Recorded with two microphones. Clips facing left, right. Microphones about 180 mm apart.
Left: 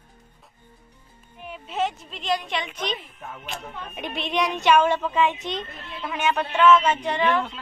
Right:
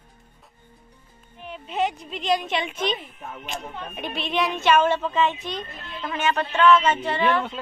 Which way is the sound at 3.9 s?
20° left (ahead or behind).